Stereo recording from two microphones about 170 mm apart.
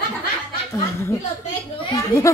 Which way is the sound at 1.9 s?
20° left (ahead or behind).